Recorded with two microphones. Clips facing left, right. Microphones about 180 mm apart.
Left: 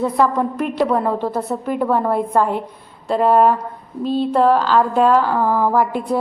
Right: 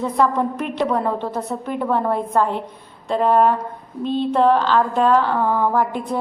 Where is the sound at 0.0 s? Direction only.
5° left (ahead or behind).